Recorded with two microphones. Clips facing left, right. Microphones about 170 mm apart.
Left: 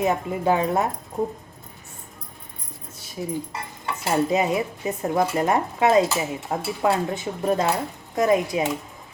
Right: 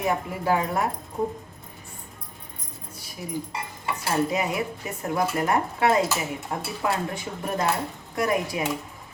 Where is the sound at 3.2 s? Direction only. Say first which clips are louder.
Left 3 dB; 30° left (ahead or behind).